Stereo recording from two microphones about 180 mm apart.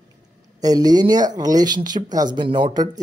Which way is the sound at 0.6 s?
20° right (ahead or behind).